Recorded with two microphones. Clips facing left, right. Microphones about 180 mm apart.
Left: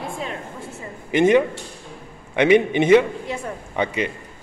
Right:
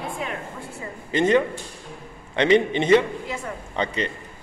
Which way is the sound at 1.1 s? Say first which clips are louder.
Left 3 dB; 10° left (ahead or behind).